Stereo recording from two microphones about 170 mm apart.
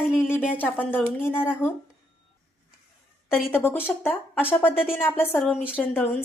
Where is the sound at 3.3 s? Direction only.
10° left (ahead or behind).